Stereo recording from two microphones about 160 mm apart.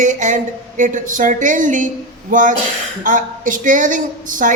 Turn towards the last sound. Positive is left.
turn(degrees=-55)  # may be behind; listen again after turning